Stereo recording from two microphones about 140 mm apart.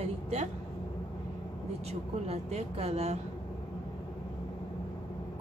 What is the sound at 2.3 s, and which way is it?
Speech, 50° right (ahead or behind).